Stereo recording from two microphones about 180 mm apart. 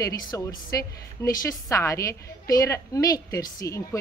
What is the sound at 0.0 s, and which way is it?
A woman's voice, 20° left (ahead or behind).